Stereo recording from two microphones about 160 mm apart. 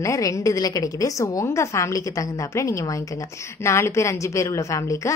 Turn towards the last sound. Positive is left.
turn(degrees=20)  # may be behind; listen again after turning